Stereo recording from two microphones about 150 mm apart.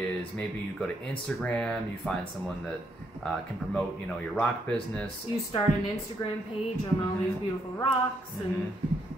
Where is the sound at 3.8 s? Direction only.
5° left (ahead or behind).